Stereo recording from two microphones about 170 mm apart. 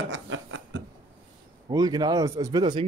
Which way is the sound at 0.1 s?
90° right.